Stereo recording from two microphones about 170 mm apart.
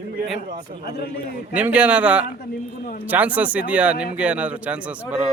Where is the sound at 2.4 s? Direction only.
60° left (ahead or behind).